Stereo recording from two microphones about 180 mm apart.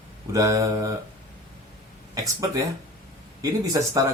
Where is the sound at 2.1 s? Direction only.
20° right (ahead or behind).